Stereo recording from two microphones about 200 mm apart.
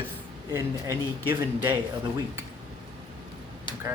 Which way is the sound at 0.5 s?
10° right (ahead or behind).